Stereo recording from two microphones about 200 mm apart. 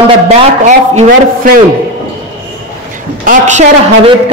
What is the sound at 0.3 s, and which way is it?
A woman's voice, 35° right (ahead or behind).